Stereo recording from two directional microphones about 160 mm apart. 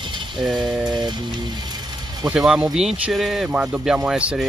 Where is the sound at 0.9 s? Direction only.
25° right (ahead or behind).